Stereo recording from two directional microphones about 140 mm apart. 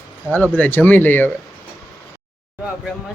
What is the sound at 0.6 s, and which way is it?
Speech, 10° left (ahead or behind).